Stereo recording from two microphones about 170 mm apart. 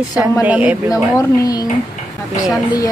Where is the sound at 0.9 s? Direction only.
20° left (ahead or behind).